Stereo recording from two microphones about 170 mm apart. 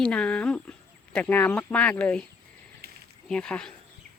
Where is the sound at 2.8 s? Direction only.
65° right (ahead or behind).